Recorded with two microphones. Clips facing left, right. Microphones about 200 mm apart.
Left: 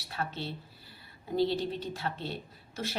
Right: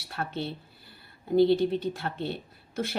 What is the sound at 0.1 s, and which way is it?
Speech, 55° right (ahead or behind).